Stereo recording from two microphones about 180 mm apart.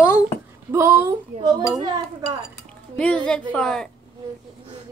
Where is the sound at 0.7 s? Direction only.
15° right (ahead or behind).